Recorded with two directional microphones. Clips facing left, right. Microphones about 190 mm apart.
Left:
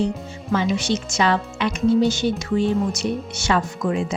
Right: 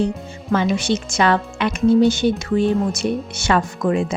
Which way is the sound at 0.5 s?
55° right (ahead or behind).